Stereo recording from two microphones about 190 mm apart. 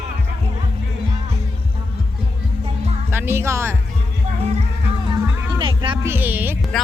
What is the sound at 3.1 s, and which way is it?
Music, 10° right (ahead or behind).